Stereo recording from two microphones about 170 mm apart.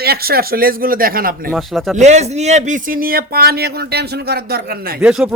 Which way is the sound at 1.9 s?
40° right (ahead or behind).